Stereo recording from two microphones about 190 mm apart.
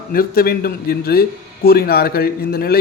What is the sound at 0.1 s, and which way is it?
A man's voice, 50° left (ahead or behind).